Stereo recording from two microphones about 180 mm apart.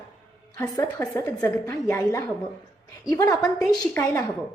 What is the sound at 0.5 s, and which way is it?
A woman's voice, 15° left (ahead or behind).